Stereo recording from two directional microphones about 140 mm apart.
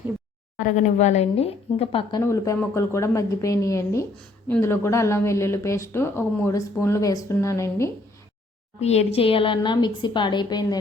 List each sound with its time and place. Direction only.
0.5 s speech: 60° left (ahead or behind); by 2.2 s 35° left (ahead or behind)
2.2 s speech: 20° left (ahead or behind)
8.8 s a woman's voice: 50° left (ahead or behind); by 10.8 s 30° left (ahead or behind)